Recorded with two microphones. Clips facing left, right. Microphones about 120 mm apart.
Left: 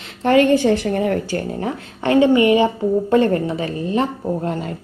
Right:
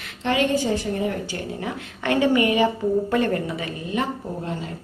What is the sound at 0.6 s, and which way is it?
Speech, 70° left (ahead or behind).